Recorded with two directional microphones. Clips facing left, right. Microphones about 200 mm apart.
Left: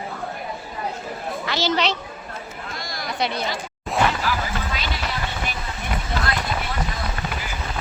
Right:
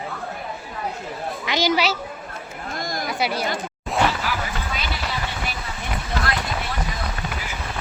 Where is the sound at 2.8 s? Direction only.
50° right (ahead or behind).